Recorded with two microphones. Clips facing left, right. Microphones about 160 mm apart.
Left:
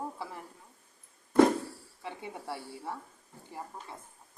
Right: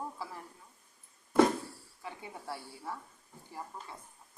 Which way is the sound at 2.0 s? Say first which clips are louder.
Left 3 dB; 25° left (ahead or behind).